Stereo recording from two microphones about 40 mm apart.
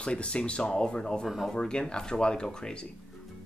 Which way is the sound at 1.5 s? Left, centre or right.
Left.